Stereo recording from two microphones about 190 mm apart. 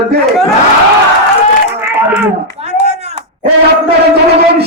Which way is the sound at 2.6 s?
35° right (ahead or behind).